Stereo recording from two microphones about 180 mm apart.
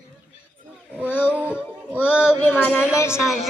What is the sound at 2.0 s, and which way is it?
Speech, 10° left (ahead or behind).